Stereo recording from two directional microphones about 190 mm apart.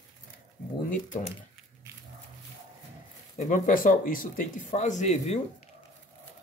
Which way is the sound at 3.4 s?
45° left (ahead or behind).